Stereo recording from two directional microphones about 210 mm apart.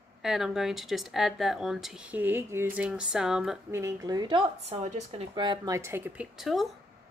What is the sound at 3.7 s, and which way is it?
Speech, 15° right (ahead or behind).